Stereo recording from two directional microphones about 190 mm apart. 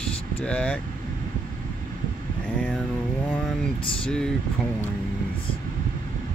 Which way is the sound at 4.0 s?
5° left (ahead or behind).